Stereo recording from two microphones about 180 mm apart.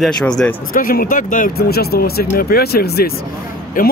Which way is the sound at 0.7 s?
50° left (ahead or behind).